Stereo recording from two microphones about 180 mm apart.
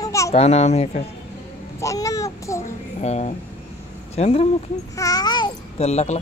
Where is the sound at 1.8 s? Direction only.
20° left (ahead or behind).